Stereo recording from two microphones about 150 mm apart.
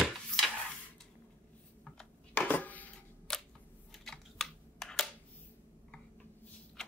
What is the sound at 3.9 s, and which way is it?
Computer keyboard, centre (ahead or behind).